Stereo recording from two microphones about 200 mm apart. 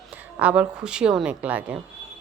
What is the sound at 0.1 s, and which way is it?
Speech, 5° right (ahead or behind).